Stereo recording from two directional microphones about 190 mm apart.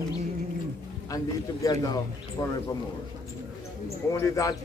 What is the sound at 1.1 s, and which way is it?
Speech, 20° left (ahead or behind).